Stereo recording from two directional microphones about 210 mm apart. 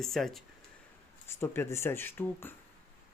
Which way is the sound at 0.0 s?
Centre (ahead or behind).